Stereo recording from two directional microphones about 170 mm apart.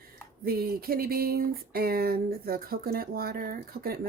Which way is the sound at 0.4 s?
60° right (ahead or behind).